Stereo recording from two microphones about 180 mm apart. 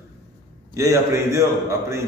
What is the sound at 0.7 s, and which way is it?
Speech, 15° right (ahead or behind).